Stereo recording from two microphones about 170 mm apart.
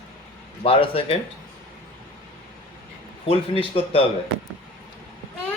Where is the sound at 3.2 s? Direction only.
35° left (ahead or behind).